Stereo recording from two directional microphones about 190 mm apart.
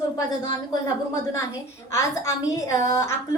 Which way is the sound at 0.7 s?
15° left (ahead or behind).